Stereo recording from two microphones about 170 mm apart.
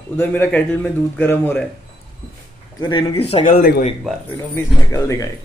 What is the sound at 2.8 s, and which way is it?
Speech, 25° left (ahead or behind).